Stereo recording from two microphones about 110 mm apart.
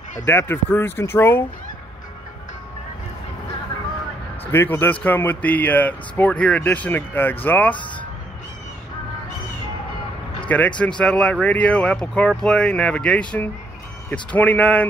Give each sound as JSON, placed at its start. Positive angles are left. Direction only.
{"t": 0.3, "sound": "speech", "side_deg": 20}
{"t": 4.5, "sound": "speech", "side_deg": 20}
{"t": 10.8, "sound": "speech", "side_deg": 10}